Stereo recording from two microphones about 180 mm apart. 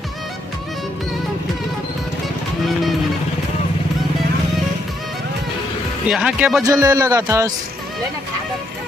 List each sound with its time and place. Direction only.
6.0 s speech: 5° right (ahead or behind)
6.6 s a man's voice: 15° right (ahead or behind)